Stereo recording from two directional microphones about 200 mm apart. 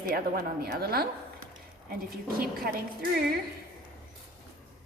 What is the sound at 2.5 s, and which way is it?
Speech, 45° right (ahead or behind).